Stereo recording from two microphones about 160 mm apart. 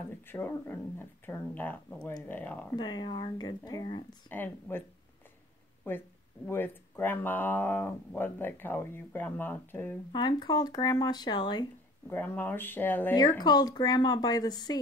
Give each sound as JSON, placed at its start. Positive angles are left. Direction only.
{"t": 0.3, "sound": "speech", "side_deg": 15}
{"t": 2.7, "sound": "speech", "side_deg": 25}
{"t": 4.3, "sound": "speech", "side_deg": 15}
{"t": 5.9, "sound": "speech", "side_deg": 10}
{"t": 10.1, "sound": "speech", "side_deg": 25}
{"t": 12.1, "sound": "speech", "side_deg": 15}
{"t": 13.4, "sound": "speech", "side_deg": 25}